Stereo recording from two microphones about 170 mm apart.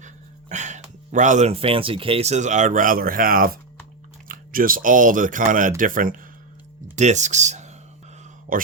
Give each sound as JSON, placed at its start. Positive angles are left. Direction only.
{"t": 0.0, "sound": "speech", "side_deg": -45}
{"t": 8.5, "sound": "speech", "side_deg": -55}